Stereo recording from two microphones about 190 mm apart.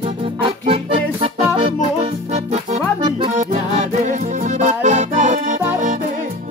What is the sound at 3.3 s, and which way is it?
Accordion, 35° right (ahead or behind).